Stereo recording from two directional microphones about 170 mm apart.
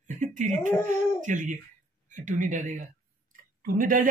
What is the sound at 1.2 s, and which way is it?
Speech, 45° right (ahead or behind).